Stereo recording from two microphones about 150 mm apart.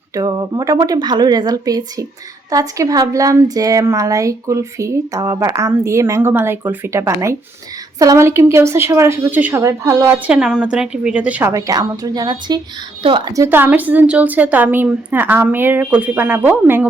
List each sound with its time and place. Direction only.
0.1 s a woman's voice: 25° right (ahead or behind)
10.2 s a woman's voice: 5° right (ahead or behind)
11.5 s a woman's voice: 25° right (ahead or behind)